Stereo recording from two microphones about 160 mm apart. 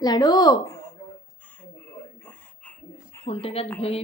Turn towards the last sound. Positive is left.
turn(degrees=40)  # may be behind; listen again after turning